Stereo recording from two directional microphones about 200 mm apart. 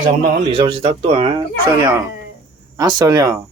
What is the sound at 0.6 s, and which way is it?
Speech, 25° right (ahead or behind).